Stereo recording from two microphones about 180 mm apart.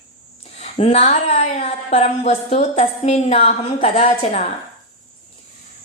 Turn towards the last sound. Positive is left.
turn(degrees=35)  # may be behind; listen again after turning